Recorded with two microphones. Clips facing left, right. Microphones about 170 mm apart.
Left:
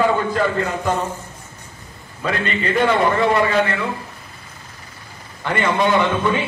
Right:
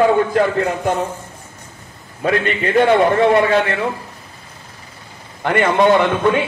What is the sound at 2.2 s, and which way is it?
Speech, 60° right (ahead or behind).